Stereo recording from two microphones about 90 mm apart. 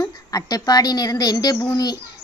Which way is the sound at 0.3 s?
45° left (ahead or behind).